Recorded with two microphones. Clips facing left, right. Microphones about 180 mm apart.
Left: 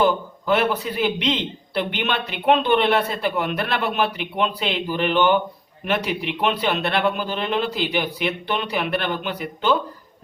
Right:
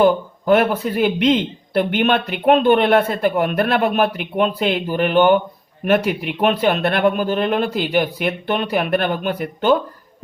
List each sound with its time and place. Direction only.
0.0 s a man's voice: 50° right (ahead or behind)